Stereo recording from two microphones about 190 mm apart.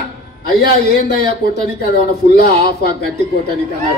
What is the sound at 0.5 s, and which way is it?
Speech, 50° left (ahead or behind).